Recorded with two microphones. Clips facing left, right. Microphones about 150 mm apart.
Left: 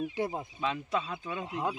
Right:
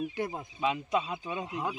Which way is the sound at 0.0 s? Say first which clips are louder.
Left 1 dB; 25° left (ahead or behind).